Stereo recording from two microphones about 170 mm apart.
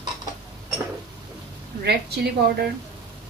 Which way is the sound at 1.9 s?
70° right (ahead or behind).